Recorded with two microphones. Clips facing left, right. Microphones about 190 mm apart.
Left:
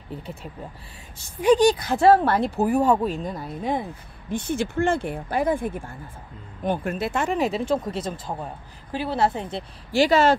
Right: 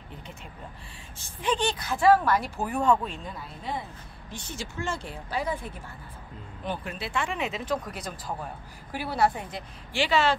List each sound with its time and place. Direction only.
1.4 s a woman's voice: 10° left (ahead or behind)
1.9 s a woman's voice: 40° left (ahead or behind)
9.9 s speech: 40° left (ahead or behind)